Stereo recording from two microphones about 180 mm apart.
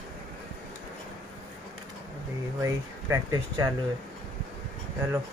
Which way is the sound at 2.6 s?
15° right (ahead or behind).